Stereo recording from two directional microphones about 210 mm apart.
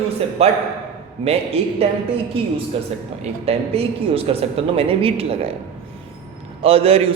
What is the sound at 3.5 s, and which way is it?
Mantra, 30° right (ahead or behind).